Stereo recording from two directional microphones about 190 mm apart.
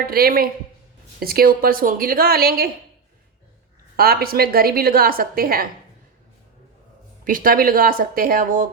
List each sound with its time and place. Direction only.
0.1 s a woman's voice: 50° right (ahead or behind)
3.9 s a woman's voice: 55° right (ahead or behind)
7.3 s a woman's voice: 50° right (ahead or behind)